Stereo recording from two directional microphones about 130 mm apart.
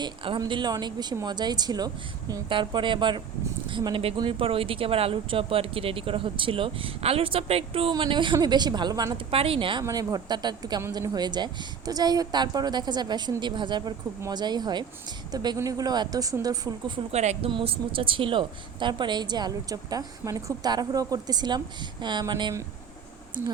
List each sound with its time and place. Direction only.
0.0 s a woman's voice: 40° right (ahead or behind)
9.1 s speech: 45° right (ahead or behind)
9.8 s a woman's voice: 25° right (ahead or behind)
17.1 s a woman's voice: 55° right (ahead or behind)
17.5 s a woman's voice: 45° right (ahead or behind)